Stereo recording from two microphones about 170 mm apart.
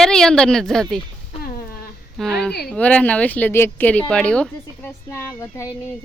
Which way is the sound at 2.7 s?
10° left (ahead or behind).